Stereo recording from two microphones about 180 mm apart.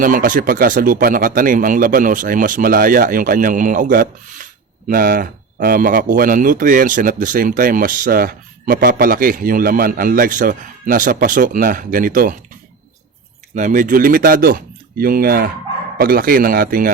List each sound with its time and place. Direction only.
0.0 s speech: 50° right (ahead or behind)
13.6 s speech: 45° right (ahead or behind)